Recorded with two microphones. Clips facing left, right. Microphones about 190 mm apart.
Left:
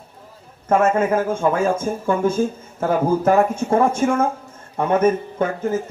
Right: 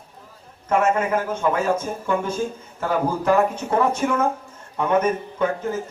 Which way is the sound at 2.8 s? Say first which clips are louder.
Left 4 dB; 45° left (ahead or behind).